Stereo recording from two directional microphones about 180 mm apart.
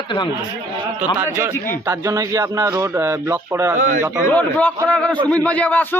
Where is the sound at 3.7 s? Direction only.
45° right (ahead or behind).